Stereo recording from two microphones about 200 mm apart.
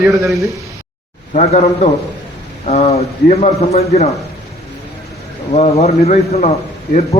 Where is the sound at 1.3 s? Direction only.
35° left (ahead or behind).